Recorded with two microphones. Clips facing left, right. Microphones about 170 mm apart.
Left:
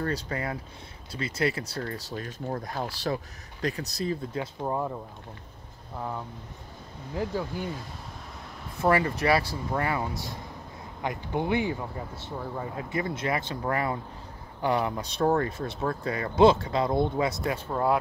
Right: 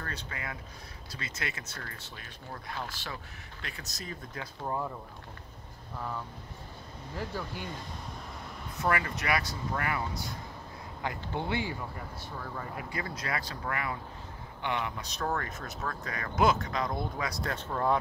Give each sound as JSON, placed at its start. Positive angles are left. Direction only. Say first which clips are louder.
{"t": 0.0, "sound": "speech", "louder": "left 10 dB", "side_deg": 35}
{"t": 5.9, "sound": "speech", "louder": "left 3 dB", "side_deg": 20}
{"t": 8.8, "sound": "speech", "louder": "left 7 dB", "side_deg": 30}
{"t": 17.5, "sound": "speech", "louder": "left 4 dB", "side_deg": 10}